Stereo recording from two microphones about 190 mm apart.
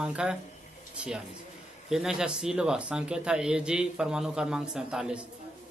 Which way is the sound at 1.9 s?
5° right (ahead or behind).